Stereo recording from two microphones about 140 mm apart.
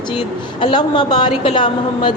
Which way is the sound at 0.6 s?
35° left (ahead or behind).